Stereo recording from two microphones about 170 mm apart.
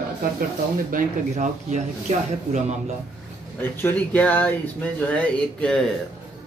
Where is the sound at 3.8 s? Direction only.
10° left (ahead or behind).